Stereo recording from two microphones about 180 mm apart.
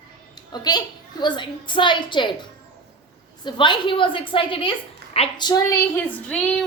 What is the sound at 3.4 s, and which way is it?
A woman's voice, 25° left (ahead or behind).